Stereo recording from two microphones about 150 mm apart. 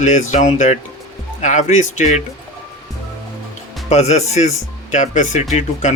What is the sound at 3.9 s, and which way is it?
Speech, 45° left (ahead or behind).